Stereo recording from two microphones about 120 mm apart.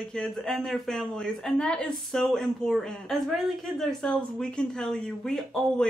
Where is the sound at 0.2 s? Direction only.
5° left (ahead or behind).